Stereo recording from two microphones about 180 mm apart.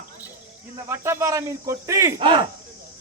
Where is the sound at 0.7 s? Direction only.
15° right (ahead or behind).